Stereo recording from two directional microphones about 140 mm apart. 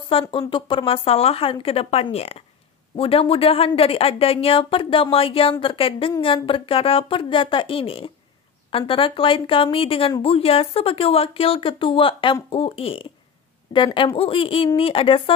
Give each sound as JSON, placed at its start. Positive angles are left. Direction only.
{"t": 0.1, "sound": "a woman's voice", "side_deg": 40}